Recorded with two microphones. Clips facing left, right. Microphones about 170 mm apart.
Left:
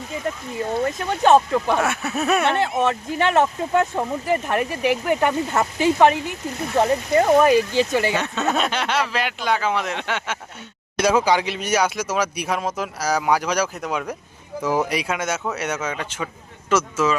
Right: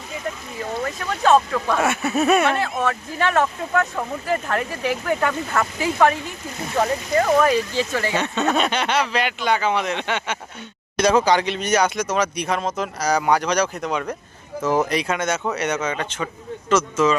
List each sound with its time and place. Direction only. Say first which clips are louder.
1.0 s speech: left 1 dB; 20° left (ahead or behind)
1.8 s speech: right 3 dB; centre (ahead or behind)
2.5 s speech: left 2 dB; 20° left (ahead or behind)
8.1 s speech: right 1 dB; centre (ahead or behind)